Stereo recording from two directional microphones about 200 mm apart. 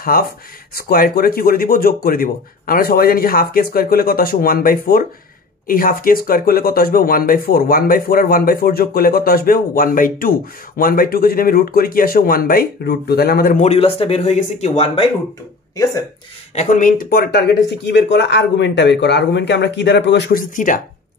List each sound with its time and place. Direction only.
0.0 s speech: 45° left (ahead or behind)
13.7 s speech: 30° left (ahead or behind)
16.5 s speech: 40° left (ahead or behind)